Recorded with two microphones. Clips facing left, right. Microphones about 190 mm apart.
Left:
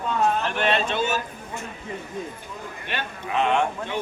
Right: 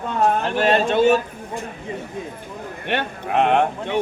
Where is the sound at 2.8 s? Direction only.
65° right (ahead or behind).